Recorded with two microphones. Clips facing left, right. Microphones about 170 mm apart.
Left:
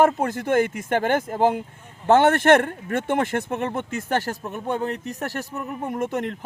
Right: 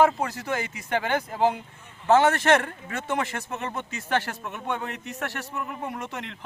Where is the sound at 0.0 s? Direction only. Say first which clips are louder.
Left 3 dB; 50° left (ahead or behind).